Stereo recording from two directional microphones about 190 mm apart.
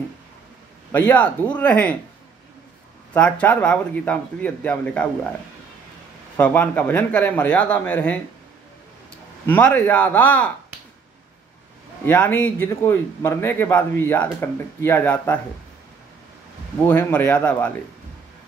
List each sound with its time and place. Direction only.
0.9 s speech: 10° left (ahead or behind)
3.1 s speech: 5° left (ahead or behind)
6.3 s speech: 10° left (ahead or behind)
9.5 s speech: 10° left (ahead or behind)
12.0 s speech: 10° left (ahead or behind)
16.8 s speech: 10° left (ahead or behind)